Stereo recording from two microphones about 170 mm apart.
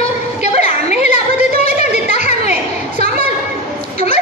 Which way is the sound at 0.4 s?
45° left (ahead or behind).